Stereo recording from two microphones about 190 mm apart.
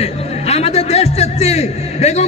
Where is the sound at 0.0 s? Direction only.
35° left (ahead or behind).